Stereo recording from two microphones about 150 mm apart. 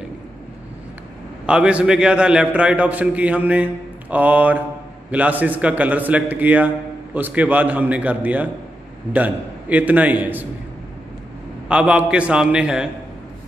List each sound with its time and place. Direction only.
1.4 s a man's voice: 5° right (ahead or behind)
11.7 s a man's voice: 5° right (ahead or behind)